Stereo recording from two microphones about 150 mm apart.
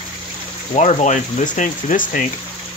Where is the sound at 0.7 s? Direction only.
50° left (ahead or behind).